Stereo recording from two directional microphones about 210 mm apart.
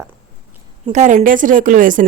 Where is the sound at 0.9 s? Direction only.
35° right (ahead or behind).